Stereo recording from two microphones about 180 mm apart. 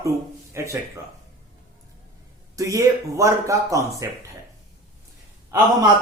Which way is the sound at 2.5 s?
15° right (ahead or behind).